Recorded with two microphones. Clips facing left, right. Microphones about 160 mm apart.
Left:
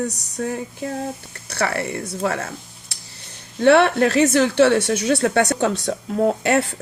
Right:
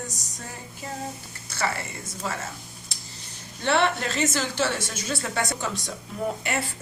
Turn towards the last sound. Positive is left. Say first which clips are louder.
# left 10 dB
turn(degrees=70)  # may be behind; listen again after turning